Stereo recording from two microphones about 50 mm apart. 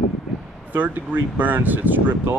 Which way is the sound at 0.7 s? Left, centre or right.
Right.